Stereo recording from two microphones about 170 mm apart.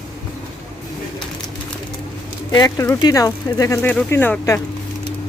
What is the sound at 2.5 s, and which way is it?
Speech, 20° left (ahead or behind).